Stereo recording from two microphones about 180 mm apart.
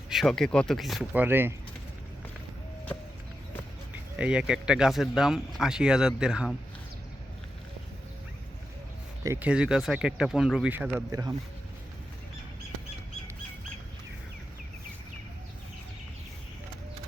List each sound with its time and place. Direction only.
0.1 s speech: centre (ahead or behind)
4.2 s speech: 5° right (ahead or behind)
9.2 s speech: 10° right (ahead or behind)
10.9 s speech: 20° right (ahead or behind)